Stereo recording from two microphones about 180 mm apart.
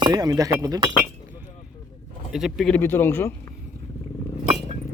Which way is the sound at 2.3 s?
Centre (ahead or behind).